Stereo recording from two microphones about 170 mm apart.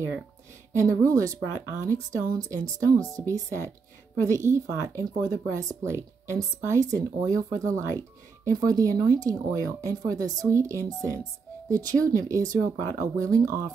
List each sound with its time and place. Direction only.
0.7 s speech: 20° right (ahead or behind)